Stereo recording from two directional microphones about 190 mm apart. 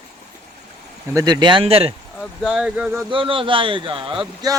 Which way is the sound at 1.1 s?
20° right (ahead or behind).